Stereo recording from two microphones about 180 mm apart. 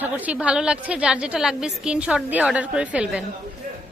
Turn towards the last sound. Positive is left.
turn(degrees=-45)  # may be behind; listen again after turning